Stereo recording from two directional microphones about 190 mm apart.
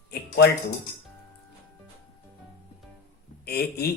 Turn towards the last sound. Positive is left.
turn(degrees=55)  # may be behind; listen again after turning